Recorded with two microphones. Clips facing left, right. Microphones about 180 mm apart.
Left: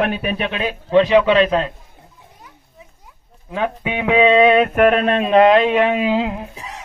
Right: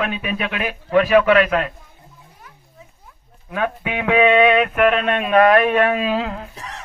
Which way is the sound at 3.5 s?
20° left (ahead or behind).